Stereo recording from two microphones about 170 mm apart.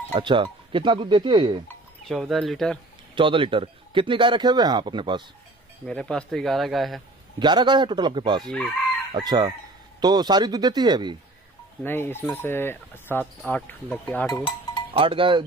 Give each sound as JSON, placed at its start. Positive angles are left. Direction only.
{"t": 0.1, "sound": "speech", "side_deg": -30}
{"t": 2.0, "sound": "speech", "side_deg": 0}
{"t": 3.2, "sound": "speech", "side_deg": -30}
{"t": 5.9, "sound": "speech", "side_deg": 5}
{"t": 7.3, "sound": "speech", "side_deg": -25}
{"t": 11.8, "sound": "speech", "side_deg": 15}
{"t": 14.9, "sound": "speech", "side_deg": -30}